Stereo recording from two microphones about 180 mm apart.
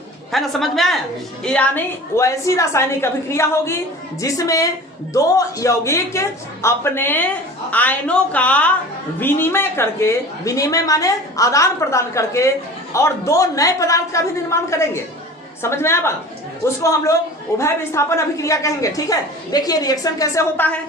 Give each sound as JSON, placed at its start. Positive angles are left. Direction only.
{"t": 0.3, "sound": "a man's voice", "side_deg": 0}